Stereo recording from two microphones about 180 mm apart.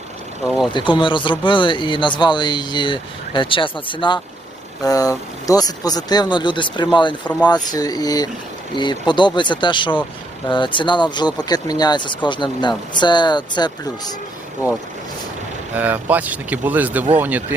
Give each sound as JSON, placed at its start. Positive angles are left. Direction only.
{"t": 0.4, "sound": "speech", "side_deg": -5}
{"t": 0.7, "sound": "speech", "side_deg": 25}
{"t": 15.7, "sound": "speech", "side_deg": -10}